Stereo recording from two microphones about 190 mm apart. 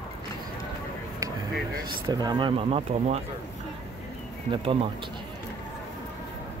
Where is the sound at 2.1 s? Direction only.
20° right (ahead or behind).